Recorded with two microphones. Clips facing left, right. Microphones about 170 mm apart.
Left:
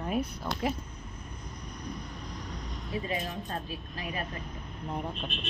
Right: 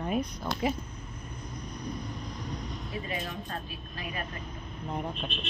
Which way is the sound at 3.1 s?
30° left (ahead or behind).